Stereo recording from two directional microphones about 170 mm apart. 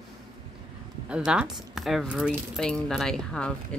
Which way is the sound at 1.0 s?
5° right (ahead or behind).